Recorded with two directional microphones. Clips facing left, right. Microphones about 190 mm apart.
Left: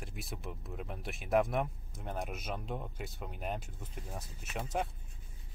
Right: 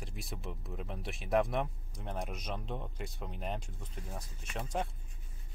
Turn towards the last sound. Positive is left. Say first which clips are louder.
# left 1 dB
turn(degrees=5)  # may be behind; listen again after turning